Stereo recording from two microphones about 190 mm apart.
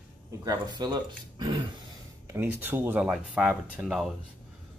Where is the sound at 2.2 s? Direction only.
10° right (ahead or behind).